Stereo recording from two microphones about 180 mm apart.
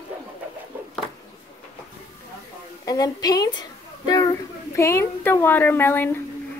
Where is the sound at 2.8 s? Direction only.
20° left (ahead or behind).